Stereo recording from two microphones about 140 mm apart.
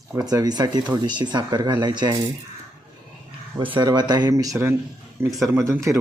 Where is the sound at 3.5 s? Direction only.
35° right (ahead or behind).